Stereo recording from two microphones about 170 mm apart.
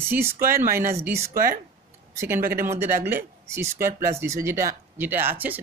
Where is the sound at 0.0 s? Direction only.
15° right (ahead or behind).